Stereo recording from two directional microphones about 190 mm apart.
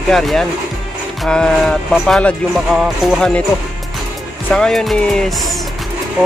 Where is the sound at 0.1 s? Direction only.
Centre (ahead or behind).